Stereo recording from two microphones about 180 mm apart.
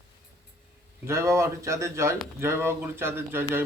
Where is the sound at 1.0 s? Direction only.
15° right (ahead or behind).